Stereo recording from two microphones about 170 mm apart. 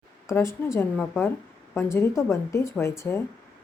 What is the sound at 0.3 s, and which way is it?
Speech, 15° left (ahead or behind).